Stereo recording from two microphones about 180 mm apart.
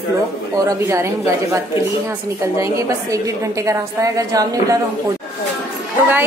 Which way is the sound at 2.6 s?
15° right (ahead or behind).